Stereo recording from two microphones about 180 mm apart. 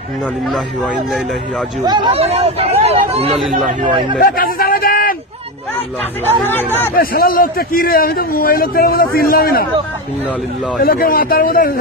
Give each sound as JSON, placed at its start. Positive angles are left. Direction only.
{"t": 1.9, "sound": "speech", "side_deg": -30}
{"t": 3.3, "sound": "speech", "side_deg": 0}
{"t": 4.2, "sound": "a sound", "side_deg": 55}
{"t": 7.0, "sound": "a man's voice", "side_deg": 55}
{"t": 10.8, "sound": "speech", "side_deg": 55}